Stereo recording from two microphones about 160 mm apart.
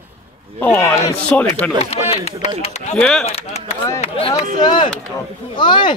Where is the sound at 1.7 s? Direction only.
40° left (ahead or behind).